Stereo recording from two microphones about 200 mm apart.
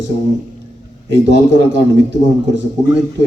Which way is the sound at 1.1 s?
65° right (ahead or behind).